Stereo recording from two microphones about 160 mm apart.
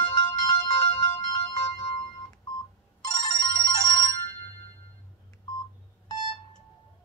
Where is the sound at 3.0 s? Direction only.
25° left (ahead or behind).